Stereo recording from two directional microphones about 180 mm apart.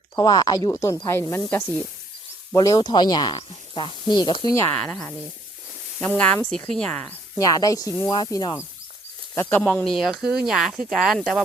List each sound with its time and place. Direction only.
0.2 s speech: 20° left (ahead or behind)
4.5 s speech: 15° left (ahead or behind)
7.3 s speech: 20° left (ahead or behind); by 11.4 s centre (ahead or behind)